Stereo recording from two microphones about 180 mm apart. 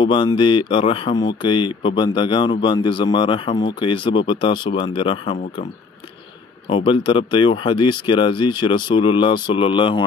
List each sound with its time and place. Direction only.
0.0 s speech: 25° left (ahead or behind)
6.7 s speech: 25° left (ahead or behind)